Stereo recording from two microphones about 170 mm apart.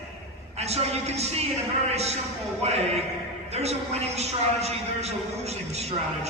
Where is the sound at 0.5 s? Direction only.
40° right (ahead or behind).